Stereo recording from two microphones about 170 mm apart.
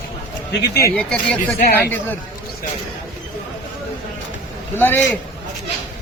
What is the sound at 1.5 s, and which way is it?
Speech, 65° left (ahead or behind).